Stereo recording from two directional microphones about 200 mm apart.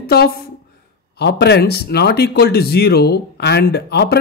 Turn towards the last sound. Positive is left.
turn(degrees=55)  # may be behind; listen again after turning